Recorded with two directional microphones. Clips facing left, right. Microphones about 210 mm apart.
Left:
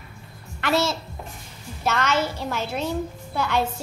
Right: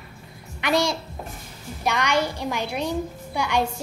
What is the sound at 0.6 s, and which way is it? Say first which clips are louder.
A woman's voice: even; 15° right (ahead or behind).